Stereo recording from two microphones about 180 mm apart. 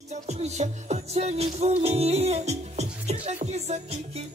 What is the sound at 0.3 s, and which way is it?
Music, 40° right (ahead or behind).